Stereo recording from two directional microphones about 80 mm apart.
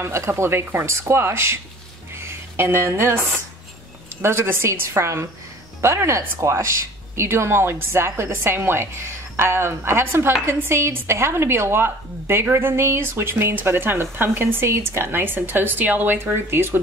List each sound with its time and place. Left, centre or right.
0.0 s speech: right
2.1 s a sound: right
4.2 s speech: right